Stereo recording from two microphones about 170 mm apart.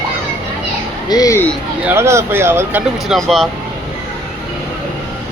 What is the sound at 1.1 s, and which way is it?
Speech, 20° left (ahead or behind).